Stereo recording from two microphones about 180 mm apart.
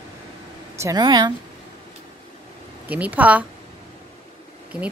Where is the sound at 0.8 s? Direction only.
20° right (ahead or behind).